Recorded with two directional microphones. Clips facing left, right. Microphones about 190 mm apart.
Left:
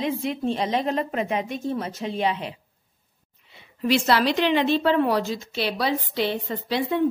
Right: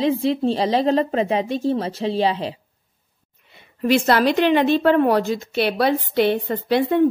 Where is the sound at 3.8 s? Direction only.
50° right (ahead or behind).